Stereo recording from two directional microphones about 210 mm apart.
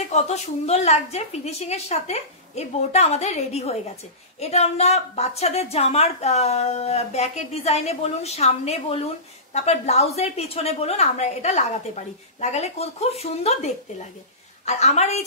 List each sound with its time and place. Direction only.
0.1 s a woman's voice: 30° left (ahead or behind)
14.7 s a woman's voice: 30° left (ahead or behind)